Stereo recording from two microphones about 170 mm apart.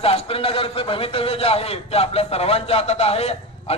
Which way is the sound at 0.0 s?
35° left (ahead or behind).